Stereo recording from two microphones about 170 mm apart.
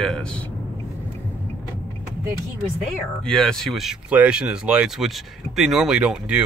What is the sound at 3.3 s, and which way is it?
Speech, 5° left (ahead or behind).